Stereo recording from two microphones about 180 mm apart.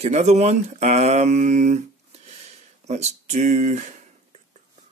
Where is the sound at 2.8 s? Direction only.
40° right (ahead or behind).